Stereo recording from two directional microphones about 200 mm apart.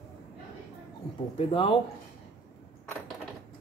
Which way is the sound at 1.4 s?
25° left (ahead or behind).